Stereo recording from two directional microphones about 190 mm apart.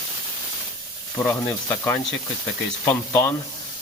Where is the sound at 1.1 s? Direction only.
10° left (ahead or behind).